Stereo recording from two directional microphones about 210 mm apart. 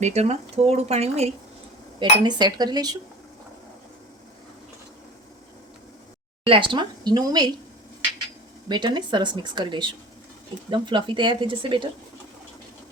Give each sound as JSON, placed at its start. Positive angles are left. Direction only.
{"t": 0.0, "sound": "speech", "side_deg": -30}
{"t": 2.0, "sound": "speech", "side_deg": -20}
{"t": 6.4, "sound": "speech", "side_deg": -25}
{"t": 8.7, "sound": "speech", "side_deg": -20}